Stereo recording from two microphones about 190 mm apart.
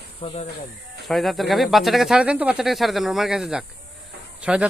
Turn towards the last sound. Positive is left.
turn(degrees=-5)  # may be behind; listen again after turning